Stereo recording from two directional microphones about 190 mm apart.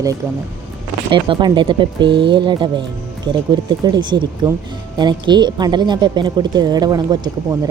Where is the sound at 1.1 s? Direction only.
25° right (ahead or behind).